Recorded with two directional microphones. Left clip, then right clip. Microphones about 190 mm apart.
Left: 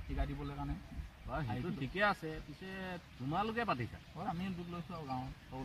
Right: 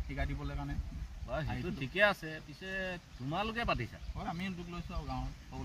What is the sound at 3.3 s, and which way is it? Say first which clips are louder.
Speech: right 1 dB; 25° right (ahead or behind).